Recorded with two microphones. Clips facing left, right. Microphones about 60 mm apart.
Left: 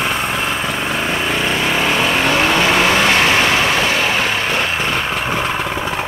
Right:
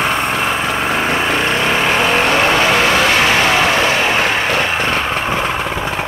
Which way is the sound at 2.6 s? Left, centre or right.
Centre.